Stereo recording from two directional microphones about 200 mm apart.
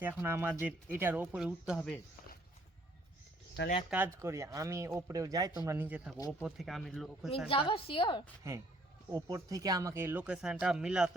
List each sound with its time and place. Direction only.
0.0 s speech: 10° right (ahead or behind)
3.8 s speech: 10° right (ahead or behind)
6.4 s speech: centre (ahead or behind)
7.3 s a woman's voice: 25° left (ahead or behind)
9.0 s speech: 15° right (ahead or behind)